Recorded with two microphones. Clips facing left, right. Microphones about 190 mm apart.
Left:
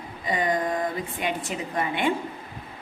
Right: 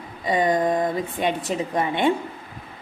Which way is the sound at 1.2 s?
30° right (ahead or behind).